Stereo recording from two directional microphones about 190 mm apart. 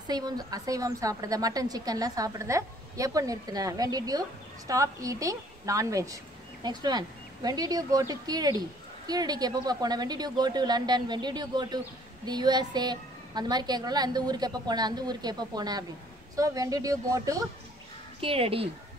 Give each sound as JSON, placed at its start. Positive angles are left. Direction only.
{"t": 0.0, "sound": "a woman's voice", "side_deg": -20}
{"t": 18.2, "sound": "a woman's voice", "side_deg": -30}